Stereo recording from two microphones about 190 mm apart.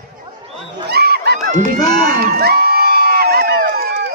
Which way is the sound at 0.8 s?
60° right (ahead or behind).